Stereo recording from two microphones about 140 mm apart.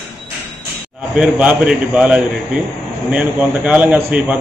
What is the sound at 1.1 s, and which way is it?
A man's voice, 10° right (ahead or behind).